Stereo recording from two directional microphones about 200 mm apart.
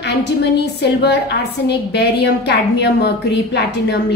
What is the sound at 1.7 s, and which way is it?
A woman's voice, 55° left (ahead or behind).